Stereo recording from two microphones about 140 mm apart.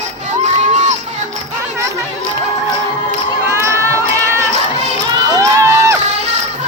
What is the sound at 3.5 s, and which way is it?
Children shouting, 20° right (ahead or behind).